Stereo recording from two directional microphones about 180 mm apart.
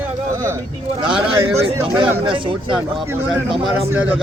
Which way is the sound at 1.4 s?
25° right (ahead or behind).